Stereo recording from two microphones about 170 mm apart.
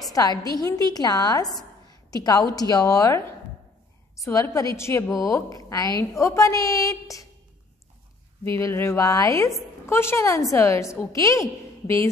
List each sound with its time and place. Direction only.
0.1 s a woman's voice: 20° left (ahead or behind)
4.2 s a woman's voice: 20° left (ahead or behind)
8.5 s a woman's voice: 15° left (ahead or behind)